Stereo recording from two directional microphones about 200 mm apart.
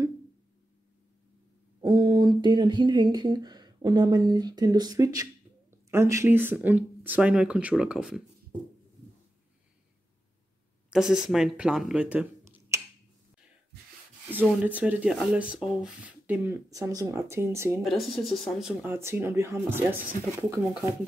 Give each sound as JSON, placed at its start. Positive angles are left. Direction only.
{"t": 1.8, "sound": "speech", "side_deg": -20}
{"t": 10.9, "sound": "speech", "side_deg": -5}
{"t": 14.3, "sound": "speech", "side_deg": -5}
{"t": 17.8, "sound": "speech", "side_deg": 0}